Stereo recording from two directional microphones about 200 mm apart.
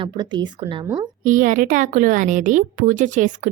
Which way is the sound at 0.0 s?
25° right (ahead or behind).